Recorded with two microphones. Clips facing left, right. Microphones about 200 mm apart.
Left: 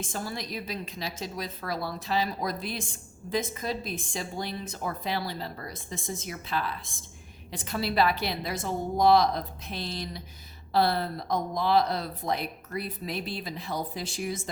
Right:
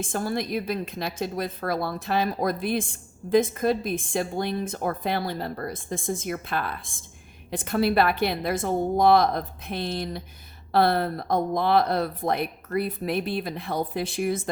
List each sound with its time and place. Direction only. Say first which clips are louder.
0.0 s a woman's voice: right 7 dB; 50° right (ahead or behind)